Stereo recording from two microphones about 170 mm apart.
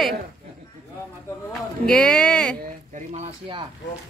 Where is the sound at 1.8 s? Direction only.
5° left (ahead or behind).